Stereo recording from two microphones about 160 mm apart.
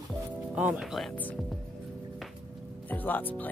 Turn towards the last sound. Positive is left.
turn(degrees=10)  # may be behind; listen again after turning